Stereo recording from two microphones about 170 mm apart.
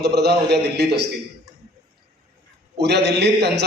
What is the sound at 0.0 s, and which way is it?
A man's voice, 75° right (ahead or behind).